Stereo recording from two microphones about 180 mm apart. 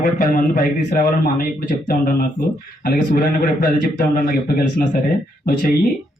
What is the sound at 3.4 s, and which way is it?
A man's voice, 60° left (ahead or behind).